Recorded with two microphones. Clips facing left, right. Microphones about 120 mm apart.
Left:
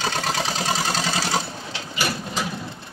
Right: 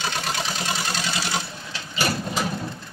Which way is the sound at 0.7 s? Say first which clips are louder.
Left 4 dB; 35° left (ahead or behind).